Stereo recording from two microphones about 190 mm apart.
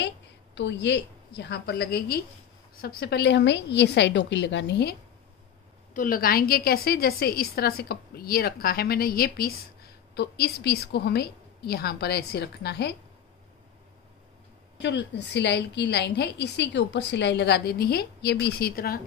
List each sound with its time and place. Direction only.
0.6 s a woman's voice: 65° left (ahead or behind)
5.9 s a woman's voice: 50° left (ahead or behind)
14.8 s a woman's voice: 65° left (ahead or behind)